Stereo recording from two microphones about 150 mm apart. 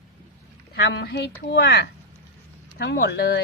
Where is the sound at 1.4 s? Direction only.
90° left.